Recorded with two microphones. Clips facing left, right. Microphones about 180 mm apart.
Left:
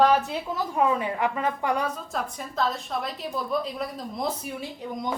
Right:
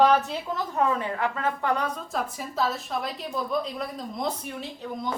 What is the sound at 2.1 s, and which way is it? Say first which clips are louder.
A woman's voice: right 1 dB; 5° right (ahead or behind).